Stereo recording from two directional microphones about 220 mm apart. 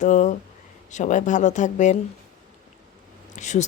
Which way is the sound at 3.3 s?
30° left (ahead or behind).